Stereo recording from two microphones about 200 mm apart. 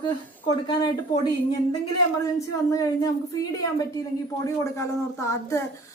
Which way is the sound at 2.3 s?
15° left (ahead or behind).